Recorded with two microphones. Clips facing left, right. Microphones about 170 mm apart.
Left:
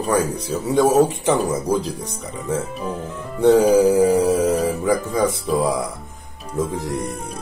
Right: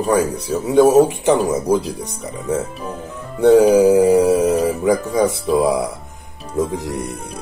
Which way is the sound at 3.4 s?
10° right (ahead or behind).